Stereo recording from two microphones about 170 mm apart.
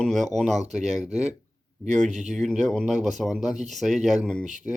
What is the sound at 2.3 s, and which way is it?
A man's voice, centre (ahead or behind).